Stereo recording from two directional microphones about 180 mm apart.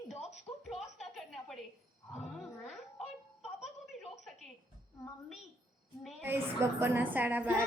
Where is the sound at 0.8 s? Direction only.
Centre (ahead or behind).